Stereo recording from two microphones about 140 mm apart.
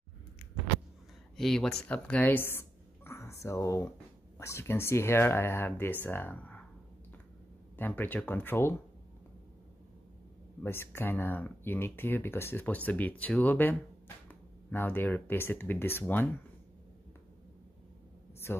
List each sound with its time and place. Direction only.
1.3 s speech: 5° left (ahead or behind)
7.7 s speech: 15° left (ahead or behind)
10.6 s speech: 15° left (ahead or behind)